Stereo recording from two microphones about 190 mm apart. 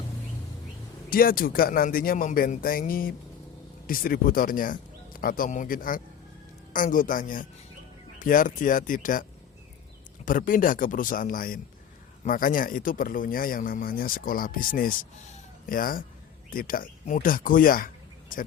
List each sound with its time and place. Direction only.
1.1 s speech: 50° left (ahead or behind)
10.2 s speech: 45° left (ahead or behind)